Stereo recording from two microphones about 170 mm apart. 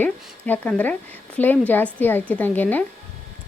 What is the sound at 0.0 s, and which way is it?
Speech, 10° left (ahead or behind).